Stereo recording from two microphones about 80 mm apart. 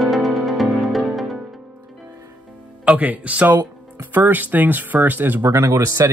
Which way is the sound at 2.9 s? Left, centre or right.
Centre.